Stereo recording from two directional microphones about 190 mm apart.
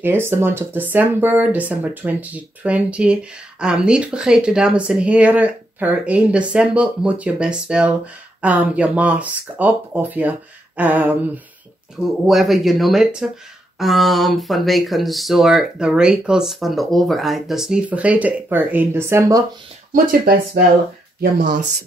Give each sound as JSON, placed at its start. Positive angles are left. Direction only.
{"t": 0.0, "sound": "speech", "side_deg": -10}
{"t": 19.9, "sound": "speech", "side_deg": -50}